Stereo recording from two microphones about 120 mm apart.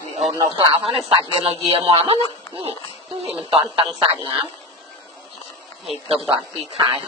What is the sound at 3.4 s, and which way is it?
Speech, 50° right (ahead or behind).